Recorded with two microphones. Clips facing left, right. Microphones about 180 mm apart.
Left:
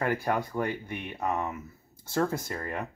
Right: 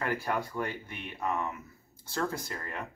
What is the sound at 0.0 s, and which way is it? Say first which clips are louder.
Speech: left 4 dB; 50° left (ahead or behind).